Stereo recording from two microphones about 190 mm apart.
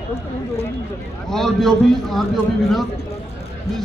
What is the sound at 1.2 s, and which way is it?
A man's voice, centre (ahead or behind).